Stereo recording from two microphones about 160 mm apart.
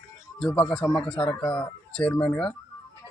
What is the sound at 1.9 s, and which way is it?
Speech, 5° left (ahead or behind).